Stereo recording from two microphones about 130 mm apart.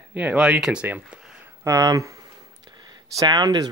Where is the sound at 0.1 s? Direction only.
10° right (ahead or behind).